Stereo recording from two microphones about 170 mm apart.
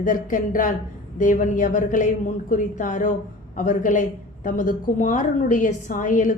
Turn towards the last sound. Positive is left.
turn(degrees=50)  # may be behind; listen again after turning